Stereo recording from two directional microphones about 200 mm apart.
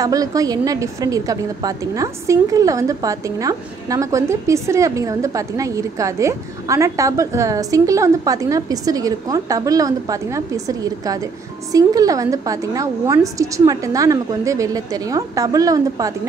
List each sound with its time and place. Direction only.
0.0 s a woman's voice: 15° right (ahead or behind)